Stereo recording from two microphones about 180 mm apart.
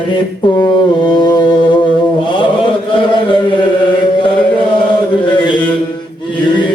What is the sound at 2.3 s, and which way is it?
Chant, 30° left (ahead or behind).